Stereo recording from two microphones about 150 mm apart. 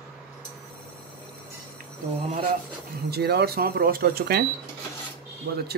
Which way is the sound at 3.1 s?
90° right.